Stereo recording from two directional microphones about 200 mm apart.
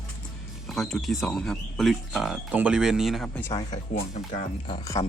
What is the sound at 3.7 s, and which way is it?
Speech, 40° left (ahead or behind).